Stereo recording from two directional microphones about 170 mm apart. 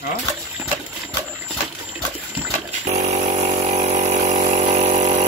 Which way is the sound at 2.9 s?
45° right (ahead or behind).